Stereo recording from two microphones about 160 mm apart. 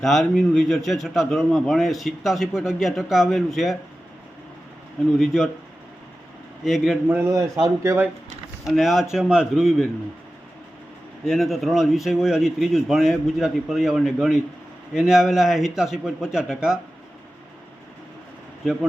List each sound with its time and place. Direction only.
0.0 s a man's voice: centre (ahead or behind)
5.1 s a man's voice: centre (ahead or behind)
6.7 s a man's voice: centre (ahead or behind)
7.1 s speech: 15° right (ahead or behind)
8.6 s a man's voice: centre (ahead or behind)
11.3 s a man's voice: centre (ahead or behind)
18.6 s a man's voice: 5° right (ahead or behind)